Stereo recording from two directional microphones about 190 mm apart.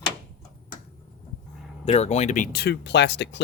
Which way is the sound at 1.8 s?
35° left (ahead or behind).